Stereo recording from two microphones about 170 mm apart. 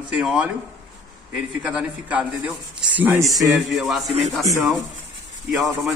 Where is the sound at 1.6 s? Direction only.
5° right (ahead or behind).